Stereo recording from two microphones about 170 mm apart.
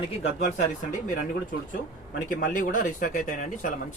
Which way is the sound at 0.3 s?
45° left (ahead or behind).